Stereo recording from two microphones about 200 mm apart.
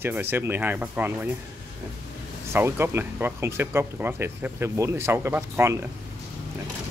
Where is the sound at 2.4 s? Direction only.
10° right (ahead or behind).